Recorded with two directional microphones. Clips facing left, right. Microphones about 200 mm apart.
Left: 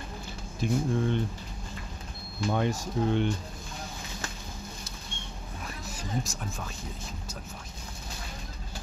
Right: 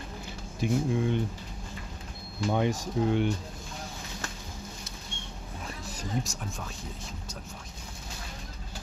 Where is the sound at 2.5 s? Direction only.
15° right (ahead or behind).